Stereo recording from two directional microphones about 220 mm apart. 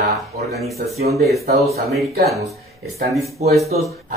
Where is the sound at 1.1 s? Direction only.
Centre (ahead or behind).